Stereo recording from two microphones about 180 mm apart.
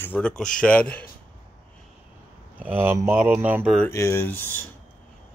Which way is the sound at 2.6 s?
10° right (ahead or behind).